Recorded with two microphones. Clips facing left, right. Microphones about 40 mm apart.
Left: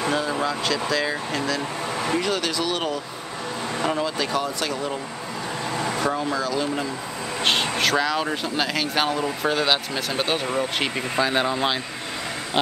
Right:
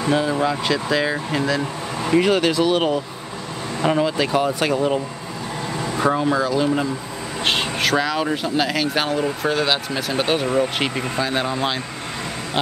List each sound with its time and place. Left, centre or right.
0.1 s speech: centre
2.1 s speech: right
11.1 s speech: centre